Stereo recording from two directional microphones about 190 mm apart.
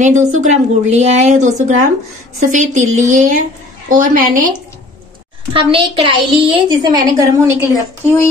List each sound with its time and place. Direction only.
0.0 s a woman's voice: 40° right (ahead or behind)
5.5 s a woman's voice: 25° right (ahead or behind)